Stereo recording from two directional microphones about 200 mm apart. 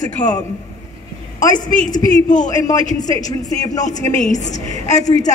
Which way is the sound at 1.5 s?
40° left (ahead or behind).